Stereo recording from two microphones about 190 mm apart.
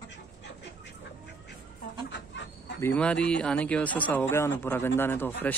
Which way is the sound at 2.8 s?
10° left (ahead or behind).